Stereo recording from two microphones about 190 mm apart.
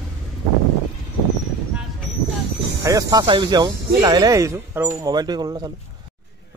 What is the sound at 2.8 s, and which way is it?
Speech, 20° right (ahead or behind).